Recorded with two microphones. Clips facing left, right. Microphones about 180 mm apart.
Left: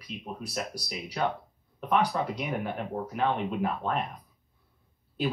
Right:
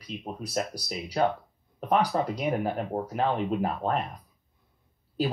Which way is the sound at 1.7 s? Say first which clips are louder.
Right 2 dB; 40° right (ahead or behind).